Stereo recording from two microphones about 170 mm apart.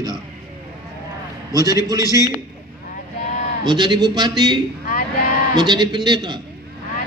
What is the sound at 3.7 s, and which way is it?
A man's voice, 25° right (ahead or behind).